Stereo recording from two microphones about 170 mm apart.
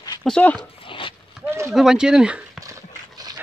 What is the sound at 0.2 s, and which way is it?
Speech, 5° left (ahead or behind).